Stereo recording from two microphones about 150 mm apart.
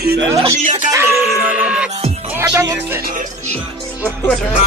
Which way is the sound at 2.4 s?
20° right (ahead or behind).